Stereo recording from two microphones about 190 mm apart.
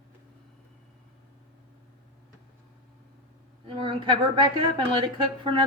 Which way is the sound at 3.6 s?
25° right (ahead or behind).